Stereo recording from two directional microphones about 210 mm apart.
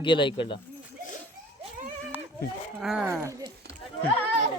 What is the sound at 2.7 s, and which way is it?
Speech, 5° right (ahead or behind).